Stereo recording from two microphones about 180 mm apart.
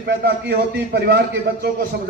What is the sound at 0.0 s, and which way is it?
A man's voice, 70° right (ahead or behind).